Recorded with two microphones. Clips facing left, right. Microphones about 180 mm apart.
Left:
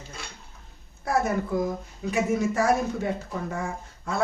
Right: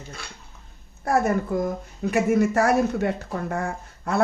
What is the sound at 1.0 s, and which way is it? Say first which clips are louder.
Speech: right 3 dB; 55° right (ahead or behind).